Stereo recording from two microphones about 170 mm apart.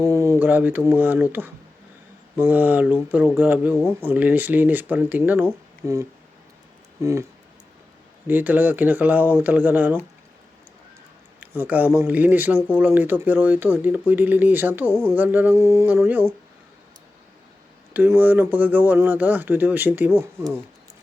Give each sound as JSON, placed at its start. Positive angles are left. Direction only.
{"t": 0.0, "sound": "a sound", "side_deg": -15}
{"t": 0.9, "sound": "speech", "side_deg": -10}
{"t": 8.3, "sound": "speech", "side_deg": -10}
{"t": 11.3, "sound": "a sound", "side_deg": -10}
{"t": 11.9, "sound": "speech", "side_deg": -10}
{"t": 17.9, "sound": "speech", "side_deg": -10}